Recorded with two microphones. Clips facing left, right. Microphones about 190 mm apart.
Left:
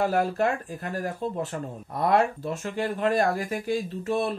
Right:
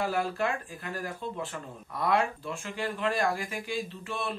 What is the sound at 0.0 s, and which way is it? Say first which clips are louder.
Speech: left 6 dB; 40° left (ahead or behind).